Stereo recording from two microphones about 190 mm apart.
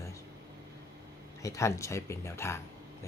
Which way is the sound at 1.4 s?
15° left (ahead or behind).